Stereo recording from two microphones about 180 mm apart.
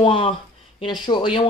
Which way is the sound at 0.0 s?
30° left (ahead or behind).